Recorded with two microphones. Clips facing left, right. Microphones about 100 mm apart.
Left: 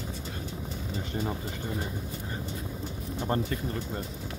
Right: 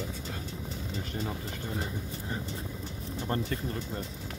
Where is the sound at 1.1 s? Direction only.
20° left (ahead or behind).